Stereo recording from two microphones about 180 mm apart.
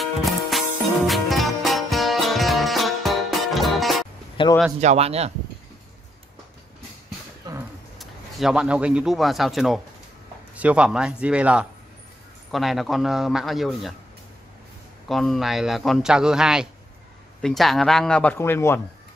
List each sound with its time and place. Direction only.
0.0 s music: centre (ahead or behind)
4.4 s a sound: 30° left (ahead or behind)
4.7 s speech: 35° right (ahead or behind)
7.5 s a sound: 20° right (ahead or behind)
8.0 s a man's voice: centre (ahead or behind)
15.0 s a man's voice: centre (ahead or behind)